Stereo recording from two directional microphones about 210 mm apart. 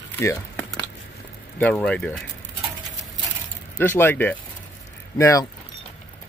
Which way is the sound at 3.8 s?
10° left (ahead or behind).